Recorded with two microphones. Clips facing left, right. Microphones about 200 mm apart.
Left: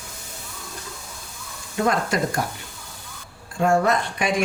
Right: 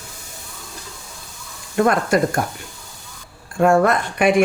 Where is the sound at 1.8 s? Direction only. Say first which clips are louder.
Right 5 dB; 55° right (ahead or behind).